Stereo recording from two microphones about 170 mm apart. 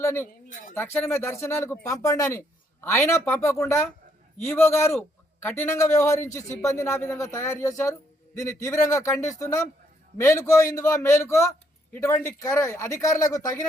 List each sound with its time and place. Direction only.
0.0 s a man's voice: 15° left (ahead or behind)